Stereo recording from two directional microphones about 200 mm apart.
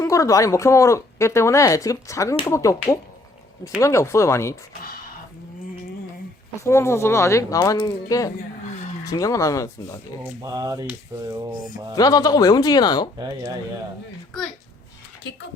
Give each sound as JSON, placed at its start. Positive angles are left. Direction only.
{"t": 0.0, "sound": "speech", "side_deg": 15}
{"t": 6.7, "sound": "speech", "side_deg": 15}
{"t": 8.4, "sound": "a sound", "side_deg": 35}
{"t": 9.0, "sound": "speech", "side_deg": 15}
{"t": 10.4, "sound": "speech", "side_deg": -20}
{"t": 11.9, "sound": "speech", "side_deg": 20}
{"t": 13.1, "sound": "speech", "side_deg": -20}